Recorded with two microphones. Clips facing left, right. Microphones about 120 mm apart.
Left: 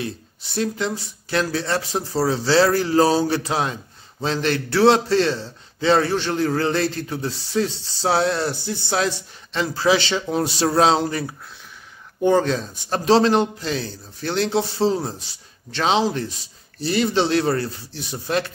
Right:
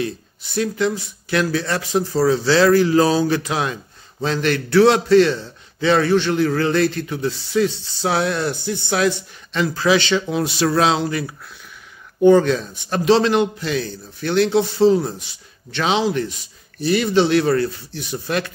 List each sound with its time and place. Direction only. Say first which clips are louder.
0.0 s a man's voice: right 5 dB; 30° left (ahead or behind)